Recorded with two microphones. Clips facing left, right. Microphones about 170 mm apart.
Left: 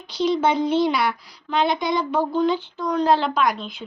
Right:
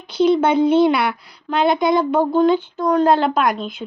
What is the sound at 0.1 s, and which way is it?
Speech, 55° right (ahead or behind).